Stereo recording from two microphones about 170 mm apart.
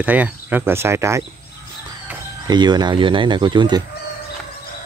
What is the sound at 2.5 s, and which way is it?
Speech, 25° right (ahead or behind).